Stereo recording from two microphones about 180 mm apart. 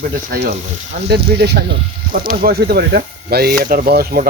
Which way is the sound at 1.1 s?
65° right (ahead or behind).